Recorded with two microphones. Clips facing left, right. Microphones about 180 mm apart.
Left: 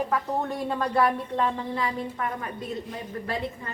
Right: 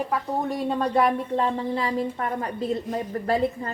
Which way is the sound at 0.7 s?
20° right (ahead or behind).